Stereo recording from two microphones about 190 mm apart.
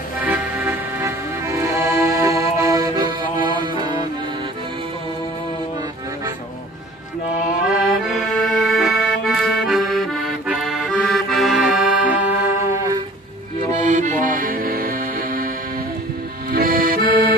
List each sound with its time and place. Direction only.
0.2 s accordion: 10° right (ahead or behind); by 4.0 s 25° right (ahead or behind)
7.6 s accordion: 5° right (ahead or behind)
13.7 s accordion: 40° right (ahead or behind)
16.5 s accordion: 50° right (ahead or behind)